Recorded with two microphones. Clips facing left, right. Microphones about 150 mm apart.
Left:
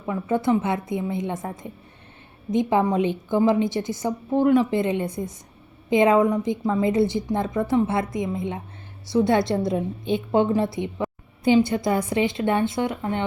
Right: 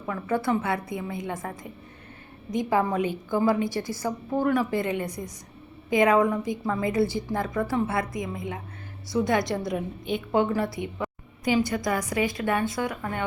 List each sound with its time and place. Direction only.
0.0 s a woman's voice: 20° left (ahead or behind)